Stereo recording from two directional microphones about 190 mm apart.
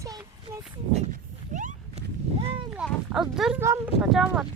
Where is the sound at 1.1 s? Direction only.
40° right (ahead or behind).